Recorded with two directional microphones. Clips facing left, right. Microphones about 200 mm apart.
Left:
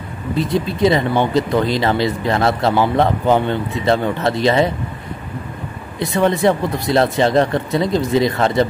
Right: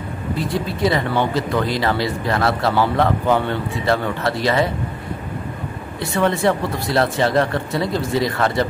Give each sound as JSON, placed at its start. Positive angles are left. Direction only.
{"t": 0.4, "sound": "speech", "side_deg": 20}
{"t": 5.9, "sound": "speech", "side_deg": 20}